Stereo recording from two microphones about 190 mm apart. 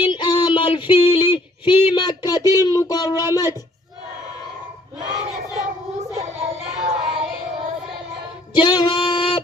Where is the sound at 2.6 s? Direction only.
15° left (ahead or behind).